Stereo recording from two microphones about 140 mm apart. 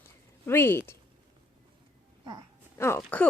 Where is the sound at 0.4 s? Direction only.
15° left (ahead or behind).